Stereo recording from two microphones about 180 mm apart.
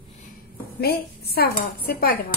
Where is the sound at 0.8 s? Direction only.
60° left (ahead or behind).